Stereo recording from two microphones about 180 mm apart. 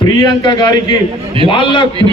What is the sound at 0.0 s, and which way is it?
A man's voice, 20° left (ahead or behind).